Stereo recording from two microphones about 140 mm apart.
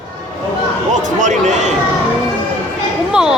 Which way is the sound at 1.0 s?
60° right (ahead or behind).